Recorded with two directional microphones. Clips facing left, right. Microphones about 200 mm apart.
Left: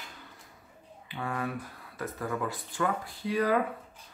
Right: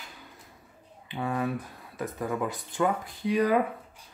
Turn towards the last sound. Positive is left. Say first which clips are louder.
# right 3 dB
turn(degrees=-15)  # may be behind; listen again after turning